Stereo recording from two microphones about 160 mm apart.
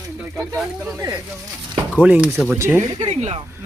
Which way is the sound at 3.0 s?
40° right (ahead or behind).